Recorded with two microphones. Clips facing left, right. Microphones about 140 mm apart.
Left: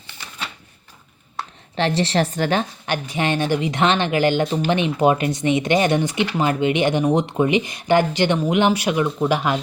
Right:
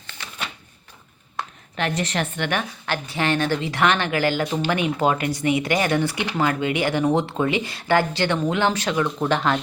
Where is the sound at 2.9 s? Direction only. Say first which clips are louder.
Right 1 dB; 20° left (ahead or behind).